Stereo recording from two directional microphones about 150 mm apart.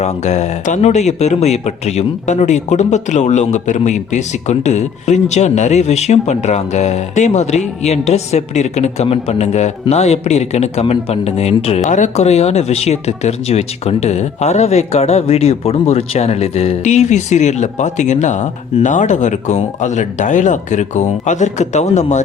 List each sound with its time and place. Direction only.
0.0 s speech: 45° left (ahead or behind)
11.9 s speech: 55° left (ahead or behind)